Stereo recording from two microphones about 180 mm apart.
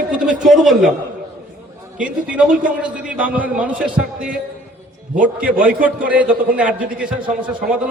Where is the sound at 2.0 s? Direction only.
5° right (ahead or behind).